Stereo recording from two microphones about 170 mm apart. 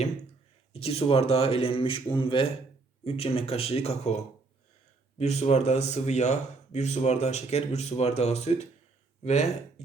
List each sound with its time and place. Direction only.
0.7 s speech: 35° left (ahead or behind)